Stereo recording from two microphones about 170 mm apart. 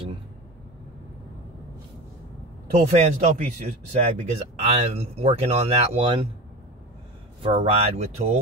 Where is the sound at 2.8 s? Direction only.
40° right (ahead or behind).